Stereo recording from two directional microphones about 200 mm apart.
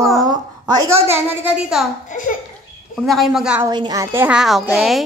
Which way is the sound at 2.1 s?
40° left (ahead or behind).